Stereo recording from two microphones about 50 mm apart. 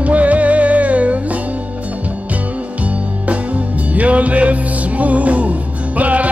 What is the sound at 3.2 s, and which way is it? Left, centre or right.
Music, right.